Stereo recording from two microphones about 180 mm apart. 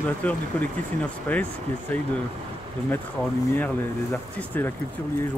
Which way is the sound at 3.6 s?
10° left (ahead or behind).